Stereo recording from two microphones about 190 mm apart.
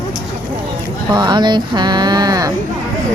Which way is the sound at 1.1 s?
20° right (ahead or behind).